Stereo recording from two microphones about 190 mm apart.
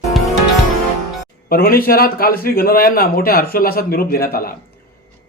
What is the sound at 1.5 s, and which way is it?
A man's voice, 50° left (ahead or behind).